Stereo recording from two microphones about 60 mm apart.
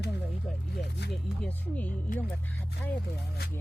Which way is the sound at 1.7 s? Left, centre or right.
Left.